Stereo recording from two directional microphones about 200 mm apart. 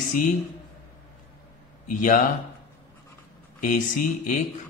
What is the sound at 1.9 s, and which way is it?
Speech, 40° left (ahead or behind).